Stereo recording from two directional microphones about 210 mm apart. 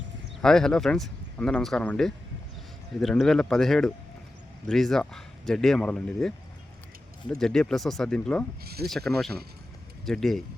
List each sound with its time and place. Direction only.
0.4 s speech: 5° left (ahead or behind)
8.6 s speech: 50° right (ahead or behind)
8.9 s speech: centre (ahead or behind)